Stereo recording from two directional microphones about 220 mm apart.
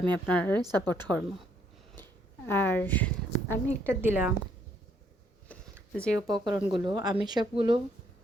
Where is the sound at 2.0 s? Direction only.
10° left (ahead or behind).